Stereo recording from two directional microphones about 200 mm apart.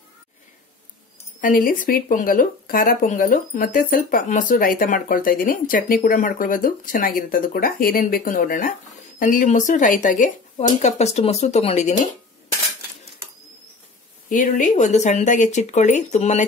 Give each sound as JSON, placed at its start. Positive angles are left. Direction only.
{"t": 1.4, "sound": "speech", "side_deg": 45}
{"t": 14.3, "sound": "speech", "side_deg": 40}